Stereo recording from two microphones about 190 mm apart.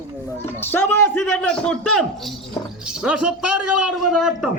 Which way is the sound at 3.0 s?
5° right (ahead or behind).